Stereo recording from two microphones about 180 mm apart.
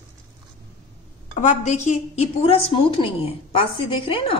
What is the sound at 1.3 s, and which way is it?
A woman's voice, 45° left (ahead or behind).